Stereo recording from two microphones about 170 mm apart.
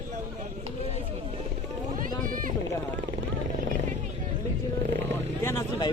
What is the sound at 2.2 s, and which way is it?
Boat, 55° right (ahead or behind).